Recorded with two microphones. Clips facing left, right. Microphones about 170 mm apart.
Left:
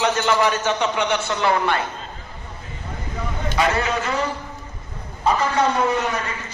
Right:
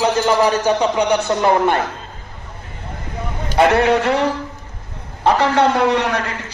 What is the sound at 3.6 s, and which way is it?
A man's voice, 65° right (ahead or behind).